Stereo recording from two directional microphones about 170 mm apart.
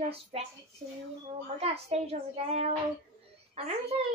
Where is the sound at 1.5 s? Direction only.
35° right (ahead or behind).